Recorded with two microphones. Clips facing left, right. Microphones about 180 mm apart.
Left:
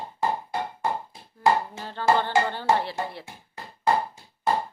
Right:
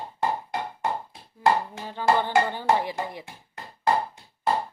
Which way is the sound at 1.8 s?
15° right (ahead or behind).